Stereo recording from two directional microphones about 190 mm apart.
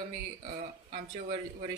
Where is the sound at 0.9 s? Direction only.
30° right (ahead or behind).